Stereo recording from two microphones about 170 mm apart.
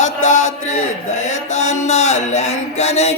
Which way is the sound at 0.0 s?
45° left (ahead or behind).